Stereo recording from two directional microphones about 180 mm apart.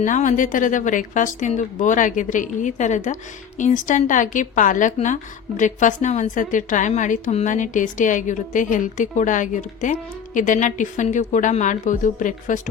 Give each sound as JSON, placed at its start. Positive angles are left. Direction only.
{"t": 0.0, "sound": "a woman's voice", "side_deg": 45}